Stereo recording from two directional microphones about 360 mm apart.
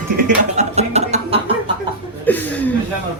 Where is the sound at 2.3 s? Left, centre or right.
Centre.